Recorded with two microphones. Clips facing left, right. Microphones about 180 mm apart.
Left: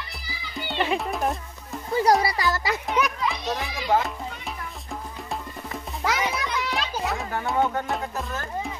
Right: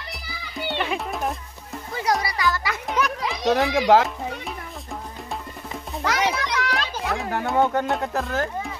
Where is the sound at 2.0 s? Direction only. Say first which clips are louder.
Left 2 dB; 35° left (ahead or behind).